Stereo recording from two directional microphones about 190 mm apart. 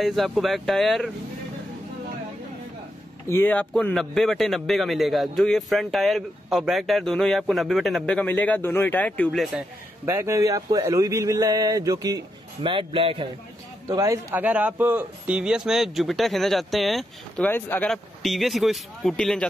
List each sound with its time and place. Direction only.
0.0 s a man's voice: centre (ahead or behind)
3.3 s a man's voice: 10° left (ahead or behind)
10.0 s speech: 15° right (ahead or behind)
13.8 s a man's voice: 15° right (ahead or behind); by 17.5 s centre (ahead or behind)
17.5 s a man's voice: 10° left (ahead or behind)